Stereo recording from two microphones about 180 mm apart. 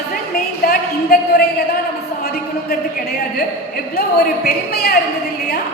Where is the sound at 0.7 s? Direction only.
55° left (ahead or behind).